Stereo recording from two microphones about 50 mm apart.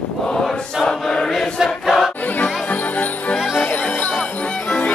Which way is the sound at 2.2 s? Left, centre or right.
Left.